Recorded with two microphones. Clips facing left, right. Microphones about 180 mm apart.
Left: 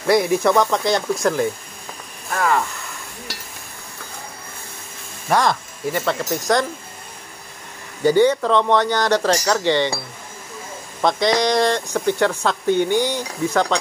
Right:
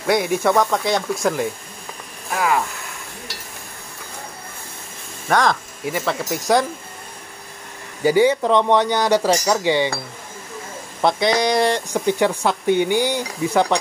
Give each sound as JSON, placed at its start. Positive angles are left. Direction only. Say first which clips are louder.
{"t": 0.0, "sound": "speech", "louder": "left 2 dB", "side_deg": 0}
{"t": 5.3, "sound": "speech", "louder": "even", "side_deg": 0}
{"t": 8.0, "sound": "speech", "louder": "even", "side_deg": -10}
{"t": 11.0, "sound": "speech", "louder": "even", "side_deg": -5}